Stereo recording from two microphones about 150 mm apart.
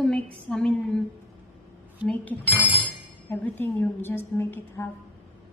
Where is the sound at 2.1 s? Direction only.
10° left (ahead or behind).